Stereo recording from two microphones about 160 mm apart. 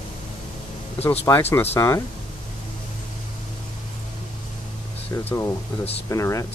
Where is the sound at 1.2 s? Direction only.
15° left (ahead or behind).